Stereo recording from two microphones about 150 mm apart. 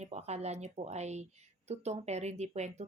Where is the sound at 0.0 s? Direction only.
45° right (ahead or behind).